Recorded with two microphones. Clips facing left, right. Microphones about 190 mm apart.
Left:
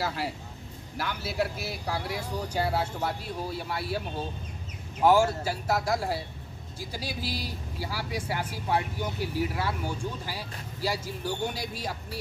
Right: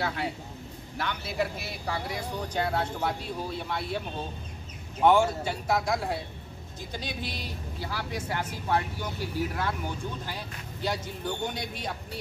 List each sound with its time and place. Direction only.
0.0 s speech: 5° left (ahead or behind)
5.0 s speech: 5° left (ahead or behind)